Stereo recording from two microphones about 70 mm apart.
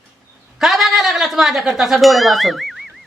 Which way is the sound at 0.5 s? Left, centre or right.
Centre.